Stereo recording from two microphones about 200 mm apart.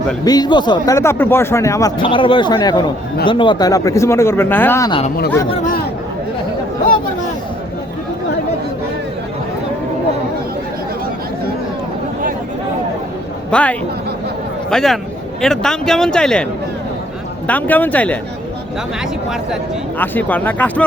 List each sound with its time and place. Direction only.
0.3 s speech: 20° left (ahead or behind)
4.9 s speech: 25° left (ahead or behind)
13.5 s a man's voice: 5° left (ahead or behind)
20.0 s speech: 10° left (ahead or behind)